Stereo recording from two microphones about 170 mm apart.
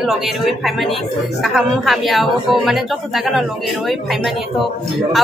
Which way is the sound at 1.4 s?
Centre (ahead or behind).